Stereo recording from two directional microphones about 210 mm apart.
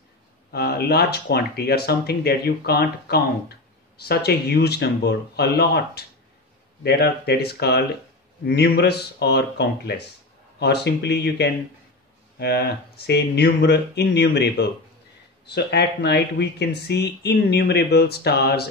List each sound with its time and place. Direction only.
0.5 s speech: 50° left (ahead or behind)